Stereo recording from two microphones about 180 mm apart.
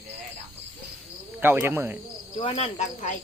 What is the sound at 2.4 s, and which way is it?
Speech, 30° left (ahead or behind).